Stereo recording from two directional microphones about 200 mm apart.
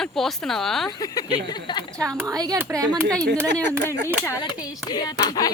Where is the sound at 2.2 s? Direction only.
20° right (ahead or behind).